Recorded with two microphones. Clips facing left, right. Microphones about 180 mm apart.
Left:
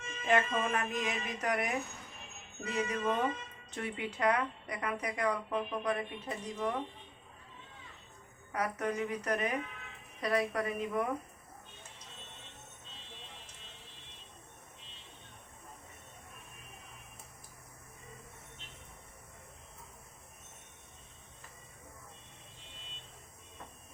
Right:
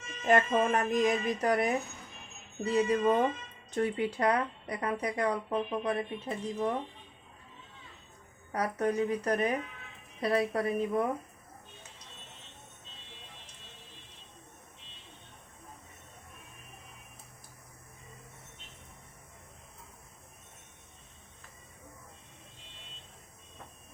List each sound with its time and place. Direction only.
0.3 s a woman's voice: 45° right (ahead or behind)
8.5 s a woman's voice: 35° right (ahead or behind)